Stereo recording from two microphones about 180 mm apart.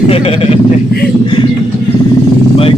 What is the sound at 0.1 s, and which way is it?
Speech, 30° left (ahead or behind).